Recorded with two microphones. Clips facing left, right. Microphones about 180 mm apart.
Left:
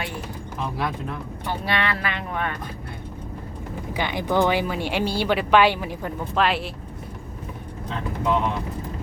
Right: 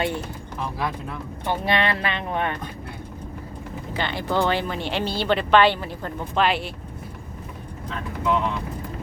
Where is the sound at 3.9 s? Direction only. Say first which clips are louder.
Left 2 dB; 15° left (ahead or behind).